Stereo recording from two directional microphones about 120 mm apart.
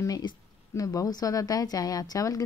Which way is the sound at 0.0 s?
30° left (ahead or behind).